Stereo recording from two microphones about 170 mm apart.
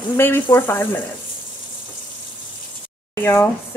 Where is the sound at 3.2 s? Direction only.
15° left (ahead or behind).